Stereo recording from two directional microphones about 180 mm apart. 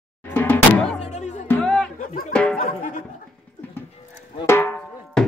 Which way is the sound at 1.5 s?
5° left (ahead or behind).